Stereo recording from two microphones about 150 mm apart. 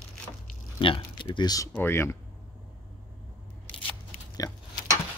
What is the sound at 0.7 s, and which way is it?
Speech, 35° left (ahead or behind).